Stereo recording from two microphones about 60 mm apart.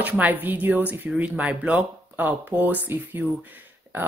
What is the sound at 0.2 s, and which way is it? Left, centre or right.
Speech, right.